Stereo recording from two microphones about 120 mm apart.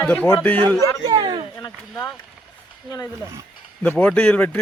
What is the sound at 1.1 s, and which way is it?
Speech, 40° right (ahead or behind).